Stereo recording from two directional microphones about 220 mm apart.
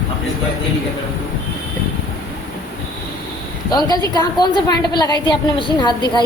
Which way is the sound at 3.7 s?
20° left (ahead or behind).